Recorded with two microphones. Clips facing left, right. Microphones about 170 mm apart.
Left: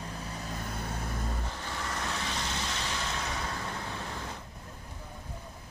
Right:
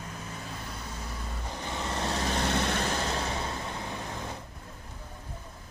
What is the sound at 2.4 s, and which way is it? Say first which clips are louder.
Vehicle: right 7 dB; 60° right (ahead or behind).